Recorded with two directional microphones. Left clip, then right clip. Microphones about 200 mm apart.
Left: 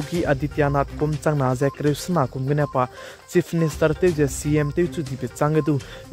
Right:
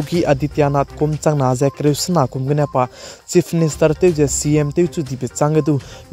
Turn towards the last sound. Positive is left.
turn(degrees=-25)  # may be behind; listen again after turning